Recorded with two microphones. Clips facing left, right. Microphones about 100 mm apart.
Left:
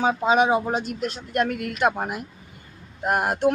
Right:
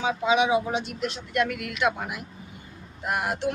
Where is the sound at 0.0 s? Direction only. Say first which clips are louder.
Left 3 dB; 45° left (ahead or behind).